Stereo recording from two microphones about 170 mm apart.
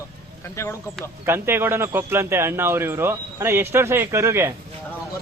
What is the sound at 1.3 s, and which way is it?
Speech, 15° right (ahead or behind).